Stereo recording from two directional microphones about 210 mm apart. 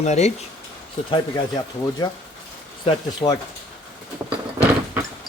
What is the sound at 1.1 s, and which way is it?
Speech, 20° left (ahead or behind).